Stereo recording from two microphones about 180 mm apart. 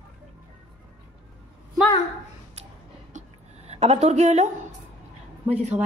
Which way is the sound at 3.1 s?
35° right (ahead or behind).